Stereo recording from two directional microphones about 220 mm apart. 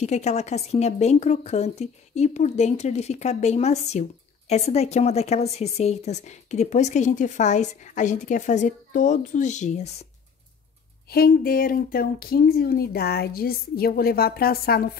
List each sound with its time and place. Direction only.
0.0 s a woman's voice: 30° left (ahead or behind)
11.1 s speech: 45° left (ahead or behind)